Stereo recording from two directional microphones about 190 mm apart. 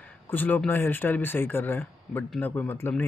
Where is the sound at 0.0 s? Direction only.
10° left (ahead or behind).